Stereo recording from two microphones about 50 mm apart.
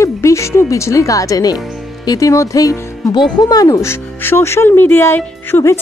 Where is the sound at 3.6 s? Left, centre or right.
Left.